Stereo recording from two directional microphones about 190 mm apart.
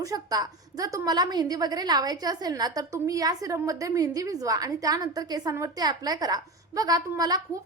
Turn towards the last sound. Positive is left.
turn(degrees=-20)  # may be behind; listen again after turning